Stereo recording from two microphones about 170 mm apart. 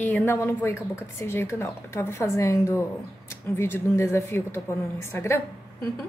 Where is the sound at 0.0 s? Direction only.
10° left (ahead or behind).